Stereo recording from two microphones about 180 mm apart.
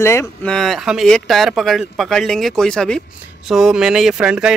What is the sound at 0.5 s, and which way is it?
Speech, centre (ahead or behind).